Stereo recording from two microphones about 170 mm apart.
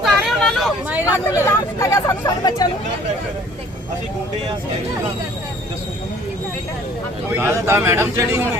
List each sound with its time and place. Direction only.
0.0 s vehicle: centre (ahead or behind)
0.9 s speech: 10° right (ahead or behind)
1.8 s speech: 20° left (ahead or behind)
7.3 s speech: 15° right (ahead or behind)